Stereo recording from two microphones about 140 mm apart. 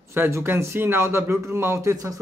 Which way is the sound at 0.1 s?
15° right (ahead or behind).